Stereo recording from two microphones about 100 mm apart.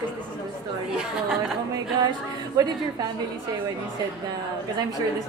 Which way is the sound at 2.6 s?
40° right (ahead or behind).